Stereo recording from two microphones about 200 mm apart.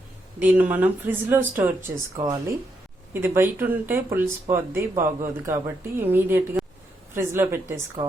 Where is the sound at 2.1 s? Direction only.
20° right (ahead or behind).